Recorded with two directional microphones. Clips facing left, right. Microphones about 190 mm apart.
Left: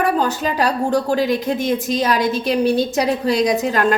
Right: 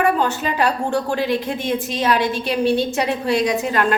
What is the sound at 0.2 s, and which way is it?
Speech, 40° left (ahead or behind).